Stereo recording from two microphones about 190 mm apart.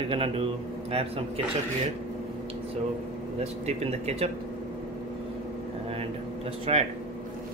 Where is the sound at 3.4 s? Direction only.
35° right (ahead or behind).